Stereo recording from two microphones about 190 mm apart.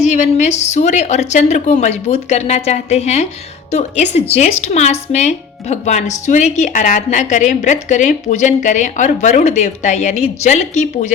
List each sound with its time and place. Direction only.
0.1 s speech: 40° left (ahead or behind)